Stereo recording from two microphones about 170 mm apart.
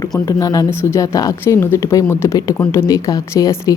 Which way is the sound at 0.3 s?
20° left (ahead or behind).